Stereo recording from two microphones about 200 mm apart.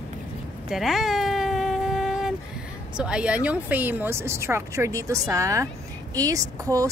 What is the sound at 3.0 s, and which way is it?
Speech, 5° right (ahead or behind).